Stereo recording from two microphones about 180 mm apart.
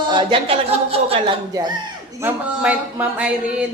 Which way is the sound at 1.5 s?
20° right (ahead or behind).